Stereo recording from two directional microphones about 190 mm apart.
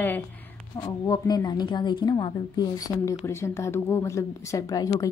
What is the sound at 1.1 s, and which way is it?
A woman's voice, 20° left (ahead or behind).